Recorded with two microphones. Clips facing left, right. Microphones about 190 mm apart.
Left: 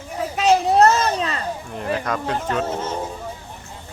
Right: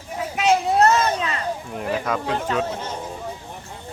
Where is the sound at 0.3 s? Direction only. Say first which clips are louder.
Left 2 dB; 35° left (ahead or behind).